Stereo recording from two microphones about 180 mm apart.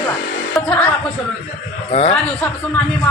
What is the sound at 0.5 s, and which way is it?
Speech, 5° left (ahead or behind).